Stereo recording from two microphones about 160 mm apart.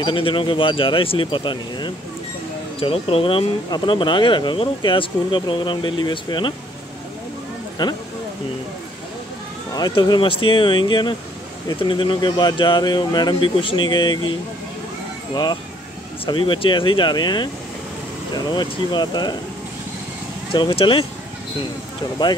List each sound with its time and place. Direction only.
0.0 s speech: 30° left (ahead or behind)
7.8 s speech: 25° left (ahead or behind)
9.8 s speech: 25° left (ahead or behind)
16.3 s speech: 30° left (ahead or behind)
20.5 s speech: 30° left (ahead or behind)